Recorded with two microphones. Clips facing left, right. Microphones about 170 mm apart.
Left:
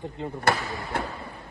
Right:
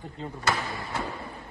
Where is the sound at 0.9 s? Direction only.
60° left (ahead or behind).